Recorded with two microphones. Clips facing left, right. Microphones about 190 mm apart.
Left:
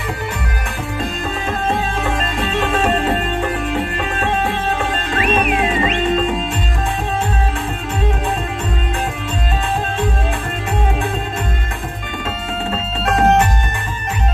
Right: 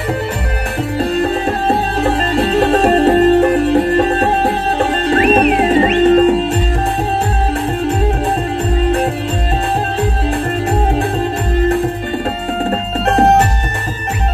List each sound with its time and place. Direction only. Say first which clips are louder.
0.9 s music: right 9 dB; 35° right (ahead or behind)
12.6 s music: right 4 dB; 40° right (ahead or behind)